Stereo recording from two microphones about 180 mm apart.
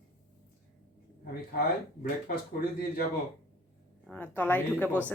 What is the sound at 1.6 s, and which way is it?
Speech, 55° left (ahead or behind).